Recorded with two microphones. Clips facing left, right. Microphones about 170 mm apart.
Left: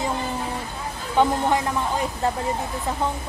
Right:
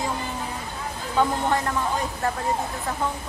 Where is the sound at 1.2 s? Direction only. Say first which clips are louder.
Left 3 dB; 20° left (ahead or behind).